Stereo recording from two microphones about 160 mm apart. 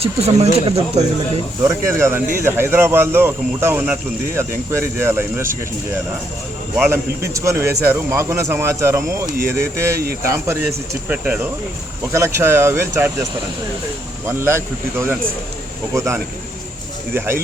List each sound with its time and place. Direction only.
0.0 s speech: 40° right (ahead or behind)
1.6 s speech: 15° right (ahead or behind)
6.9 s speech: 20° right (ahead or behind)
14.3 s speech: 15° right (ahead or behind)